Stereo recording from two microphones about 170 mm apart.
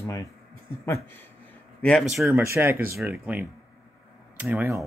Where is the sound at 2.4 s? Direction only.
15° right (ahead or behind).